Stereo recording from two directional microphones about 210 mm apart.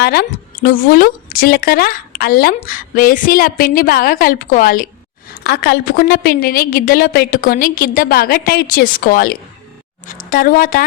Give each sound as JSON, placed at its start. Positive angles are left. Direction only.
{"t": 0.0, "sound": "a woman's voice", "side_deg": 50}